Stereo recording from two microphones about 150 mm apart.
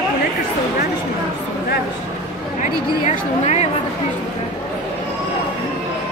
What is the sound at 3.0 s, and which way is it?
Speech, 45° left (ahead or behind).